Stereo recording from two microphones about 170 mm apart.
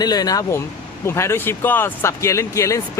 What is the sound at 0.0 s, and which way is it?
Speech, 20° left (ahead or behind).